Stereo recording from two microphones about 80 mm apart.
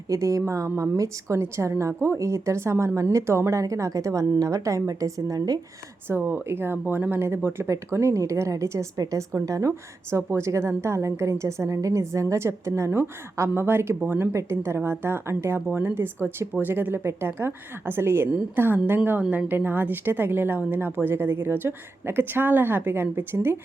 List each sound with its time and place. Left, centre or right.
0.1 s a woman's voice: right
6.1 s a woman's voice: right
18.3 s a woman's voice: centre